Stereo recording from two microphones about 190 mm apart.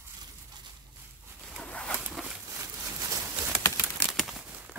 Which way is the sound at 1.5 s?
5° left (ahead or behind).